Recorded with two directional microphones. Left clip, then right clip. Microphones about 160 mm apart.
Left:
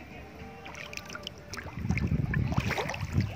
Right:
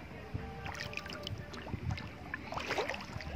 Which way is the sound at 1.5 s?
60° left (ahead or behind).